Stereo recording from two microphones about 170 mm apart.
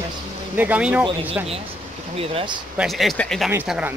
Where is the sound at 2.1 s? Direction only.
30° right (ahead or behind).